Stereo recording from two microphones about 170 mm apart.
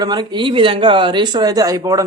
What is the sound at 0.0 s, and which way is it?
A man's voice, 25° right (ahead or behind).